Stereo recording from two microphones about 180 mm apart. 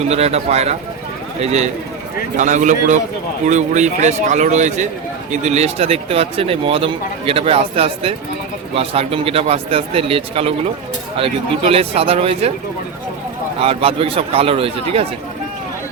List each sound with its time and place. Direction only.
0.0 s a man's voice: 35° right (ahead or behind)
13.6 s speech: 30° right (ahead or behind)